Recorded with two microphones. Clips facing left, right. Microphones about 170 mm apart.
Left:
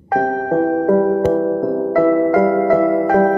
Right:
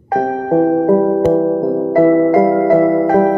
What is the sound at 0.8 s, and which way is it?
Music, 25° right (ahead or behind).